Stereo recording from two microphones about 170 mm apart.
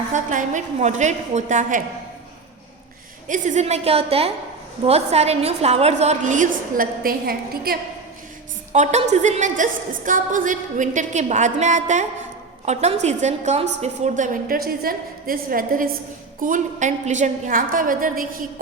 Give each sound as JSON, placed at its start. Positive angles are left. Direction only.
{"t": 0.1, "sound": "a woman's voice", "side_deg": -45}
{"t": 3.2, "sound": "a woman's voice", "side_deg": -50}
{"t": 8.7, "sound": "a woman's voice", "side_deg": -45}
{"t": 14.4, "sound": "a woman's voice", "side_deg": -60}